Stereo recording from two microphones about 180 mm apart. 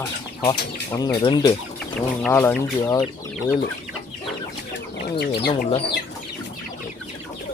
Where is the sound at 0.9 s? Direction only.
20° left (ahead or behind).